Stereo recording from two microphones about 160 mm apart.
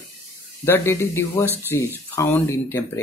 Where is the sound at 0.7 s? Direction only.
15° left (ahead or behind).